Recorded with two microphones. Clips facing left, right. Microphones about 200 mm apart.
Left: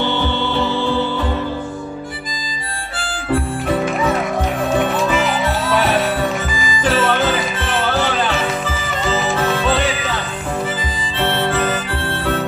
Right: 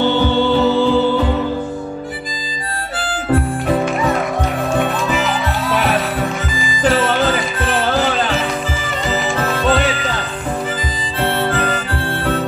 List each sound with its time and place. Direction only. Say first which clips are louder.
0.0 s music: right 5 dB; 45° right (ahead or behind)
9.6 s music: right 2 dB; 40° right (ahead or behind)
11.1 s harmonica: even; 35° right (ahead or behind)